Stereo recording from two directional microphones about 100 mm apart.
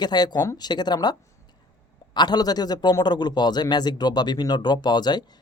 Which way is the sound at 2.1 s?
45° left (ahead or behind).